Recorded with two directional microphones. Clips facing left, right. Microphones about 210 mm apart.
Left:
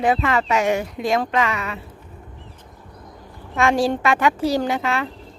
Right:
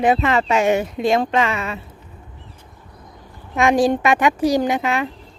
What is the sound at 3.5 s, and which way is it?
Speech, 15° right (ahead or behind).